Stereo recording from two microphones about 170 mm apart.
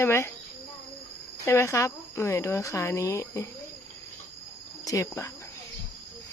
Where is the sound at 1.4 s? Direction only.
15° left (ahead or behind).